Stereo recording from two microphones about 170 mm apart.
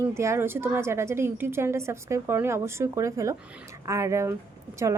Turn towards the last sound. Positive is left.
turn(degrees=-20)  # may be behind; listen again after turning